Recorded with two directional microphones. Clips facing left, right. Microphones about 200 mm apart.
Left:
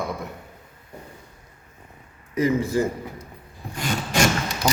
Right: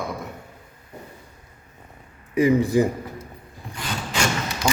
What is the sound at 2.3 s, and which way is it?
Speech, 15° right (ahead or behind).